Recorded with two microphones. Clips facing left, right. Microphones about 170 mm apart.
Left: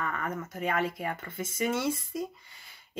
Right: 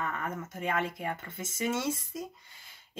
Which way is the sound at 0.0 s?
20° right (ahead or behind).